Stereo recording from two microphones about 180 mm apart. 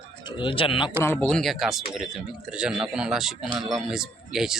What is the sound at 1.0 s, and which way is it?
Speech, 10° left (ahead or behind).